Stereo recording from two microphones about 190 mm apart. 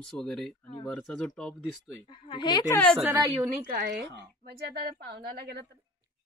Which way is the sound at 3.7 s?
55° right (ahead or behind).